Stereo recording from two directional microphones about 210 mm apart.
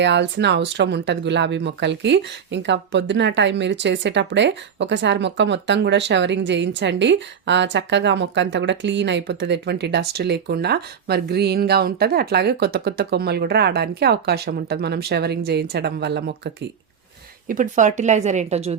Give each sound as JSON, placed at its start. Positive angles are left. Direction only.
{"t": 0.0, "sound": "speech", "side_deg": -55}
{"t": 17.5, "sound": "a woman's voice", "side_deg": -35}